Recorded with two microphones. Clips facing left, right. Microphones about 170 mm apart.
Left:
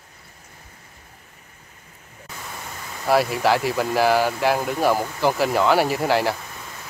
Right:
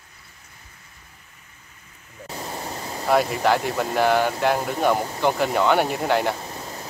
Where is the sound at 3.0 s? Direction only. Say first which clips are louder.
Left 1 dB; centre (ahead or behind).